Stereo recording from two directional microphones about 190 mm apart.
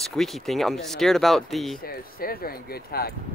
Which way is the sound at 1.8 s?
50° left (ahead or behind).